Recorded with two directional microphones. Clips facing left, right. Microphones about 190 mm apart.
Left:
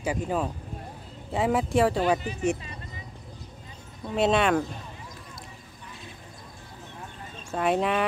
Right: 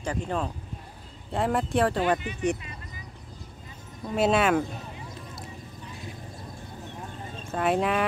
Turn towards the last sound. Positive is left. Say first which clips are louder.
# even
turn(degrees=0)  # may be behind; listen again after turning